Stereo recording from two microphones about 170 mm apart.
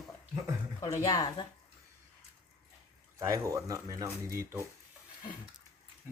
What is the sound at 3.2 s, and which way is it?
Speech, 20° right (ahead or behind).